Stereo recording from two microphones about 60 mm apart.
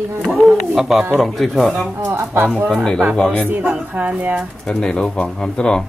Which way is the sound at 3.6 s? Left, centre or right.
Right.